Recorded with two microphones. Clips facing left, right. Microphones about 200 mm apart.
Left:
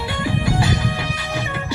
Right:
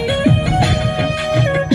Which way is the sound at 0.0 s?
65° right (ahead or behind).